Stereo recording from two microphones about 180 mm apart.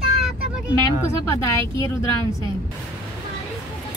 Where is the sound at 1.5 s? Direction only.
20° left (ahead or behind).